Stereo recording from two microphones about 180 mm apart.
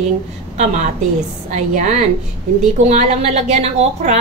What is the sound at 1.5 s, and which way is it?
A woman's voice, 40° right (ahead or behind).